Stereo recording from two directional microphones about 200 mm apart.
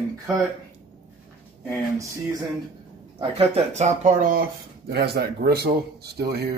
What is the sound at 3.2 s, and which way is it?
Speech, 30° right (ahead or behind).